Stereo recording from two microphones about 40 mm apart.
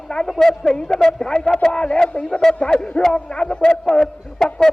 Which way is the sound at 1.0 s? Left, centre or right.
Centre.